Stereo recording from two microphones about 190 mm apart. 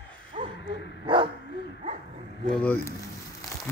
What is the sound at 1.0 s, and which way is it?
Bow-wow, 25° right (ahead or behind).